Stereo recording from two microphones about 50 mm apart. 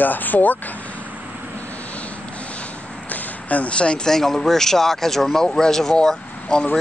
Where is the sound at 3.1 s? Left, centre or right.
Left.